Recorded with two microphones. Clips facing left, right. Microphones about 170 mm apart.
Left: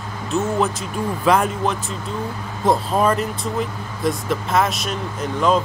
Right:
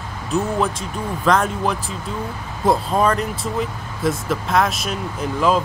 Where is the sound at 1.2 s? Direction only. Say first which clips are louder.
Even; 5° left (ahead or behind).